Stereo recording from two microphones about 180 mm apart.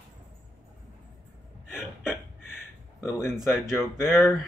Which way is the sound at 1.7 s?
5° right (ahead or behind).